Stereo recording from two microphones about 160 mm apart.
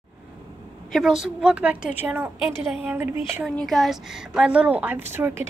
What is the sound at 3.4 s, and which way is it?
A woman's voice, centre (ahead or behind).